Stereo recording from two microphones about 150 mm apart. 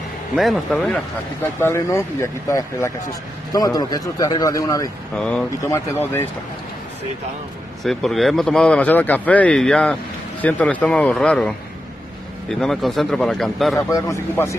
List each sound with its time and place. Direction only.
0.4 s a man's voice: centre (ahead or behind)
1.4 s speech: 15° left (ahead or behind)
5.1 s speech: 5° left (ahead or behind)
5.6 s speech: 15° left (ahead or behind)
7.8 s a man's voice: centre (ahead or behind)
13.7 s speech: 20° left (ahead or behind)